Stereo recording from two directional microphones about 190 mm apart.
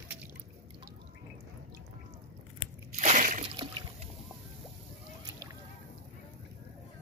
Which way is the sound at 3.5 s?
25° right (ahead or behind).